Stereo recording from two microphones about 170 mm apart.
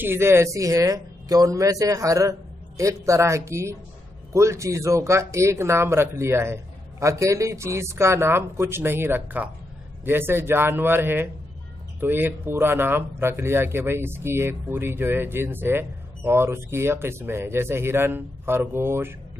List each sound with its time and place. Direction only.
0.0 s speech: 15° right (ahead or behind)